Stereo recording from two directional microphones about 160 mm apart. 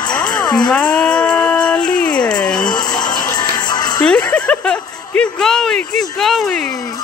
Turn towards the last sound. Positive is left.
turn(degrees=5)  # may be behind; listen again after turning